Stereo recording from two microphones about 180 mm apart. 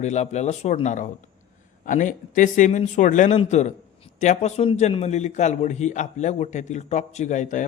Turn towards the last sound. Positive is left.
turn(degrees=45)  # may be behind; listen again after turning